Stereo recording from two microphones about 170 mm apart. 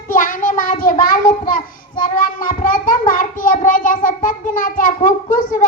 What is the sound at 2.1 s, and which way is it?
Child singing, 50° left (ahead or behind).